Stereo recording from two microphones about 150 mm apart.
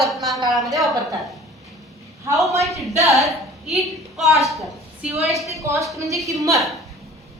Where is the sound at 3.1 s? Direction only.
Centre (ahead or behind).